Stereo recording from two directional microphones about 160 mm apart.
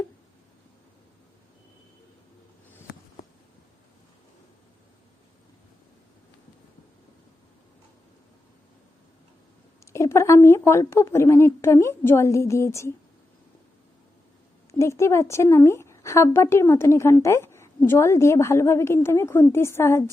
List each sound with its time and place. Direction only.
9.8 s speech: 20° left (ahead or behind)
14.7 s speech: 15° left (ahead or behind)